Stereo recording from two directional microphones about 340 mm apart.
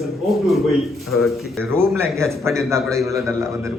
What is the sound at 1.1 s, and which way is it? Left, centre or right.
A man's voice, centre.